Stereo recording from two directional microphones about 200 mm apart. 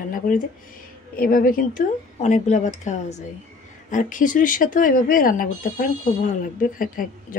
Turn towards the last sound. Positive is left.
turn(degrees=45)  # may be behind; listen again after turning